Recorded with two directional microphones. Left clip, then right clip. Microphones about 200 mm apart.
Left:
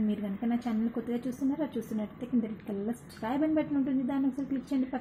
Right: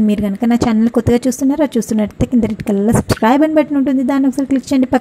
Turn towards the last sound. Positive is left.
turn(degrees=-35)  # may be behind; listen again after turning